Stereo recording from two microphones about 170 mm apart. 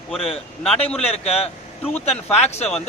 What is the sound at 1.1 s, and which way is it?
Speech, 35° left (ahead or behind).